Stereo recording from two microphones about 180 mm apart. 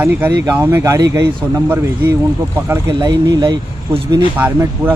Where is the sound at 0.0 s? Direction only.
15° right (ahead or behind).